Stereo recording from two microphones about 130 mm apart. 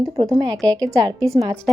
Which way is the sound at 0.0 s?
30° right (ahead or behind).